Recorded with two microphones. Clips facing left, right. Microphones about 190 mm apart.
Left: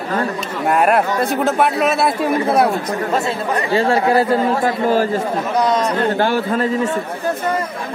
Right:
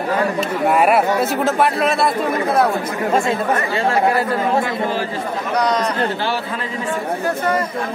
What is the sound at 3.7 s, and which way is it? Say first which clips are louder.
Speech: left 5 dB; 30° left (ahead or behind).